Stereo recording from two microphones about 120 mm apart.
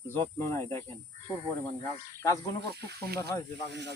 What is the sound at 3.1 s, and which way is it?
Speech, 30° left (ahead or behind).